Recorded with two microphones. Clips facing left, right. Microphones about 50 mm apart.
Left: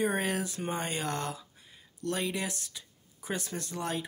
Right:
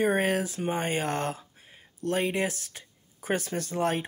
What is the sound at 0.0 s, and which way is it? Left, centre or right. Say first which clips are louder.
Speech: right 5 dB; right.